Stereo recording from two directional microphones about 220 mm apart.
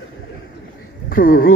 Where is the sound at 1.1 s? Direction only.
40° left (ahead or behind).